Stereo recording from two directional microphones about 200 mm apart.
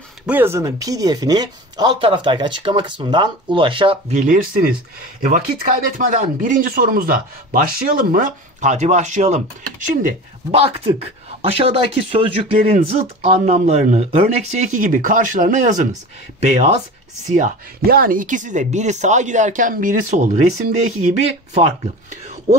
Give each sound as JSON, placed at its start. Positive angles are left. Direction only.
{"t": 0.3, "sound": "speech", "side_deg": -10}